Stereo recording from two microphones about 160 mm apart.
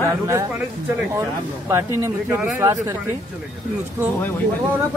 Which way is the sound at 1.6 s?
15° right (ahead or behind).